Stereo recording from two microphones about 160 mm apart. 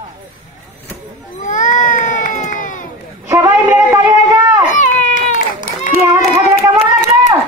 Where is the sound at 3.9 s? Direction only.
20° right (ahead or behind).